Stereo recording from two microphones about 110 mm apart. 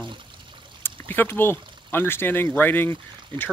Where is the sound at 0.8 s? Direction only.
20° left (ahead or behind).